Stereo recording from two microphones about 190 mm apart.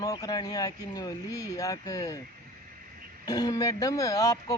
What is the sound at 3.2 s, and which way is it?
Speech, 20° left (ahead or behind).